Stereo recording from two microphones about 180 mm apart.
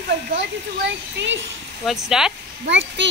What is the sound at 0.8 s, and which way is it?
Speech, 85° right.